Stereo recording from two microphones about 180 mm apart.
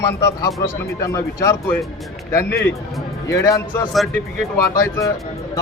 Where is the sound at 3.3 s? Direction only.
15° left (ahead or behind).